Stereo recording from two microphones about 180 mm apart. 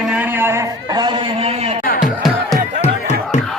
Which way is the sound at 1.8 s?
55° left (ahead or behind).